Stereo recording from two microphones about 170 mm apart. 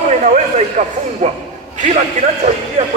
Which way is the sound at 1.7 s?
45° right (ahead or behind).